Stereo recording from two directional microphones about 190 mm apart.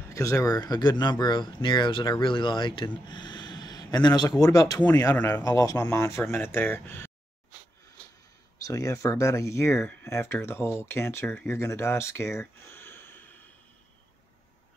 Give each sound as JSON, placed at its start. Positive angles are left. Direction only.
{"t": 0.1, "sound": "speech", "side_deg": 15}
{"t": 8.6, "sound": "speech", "side_deg": 15}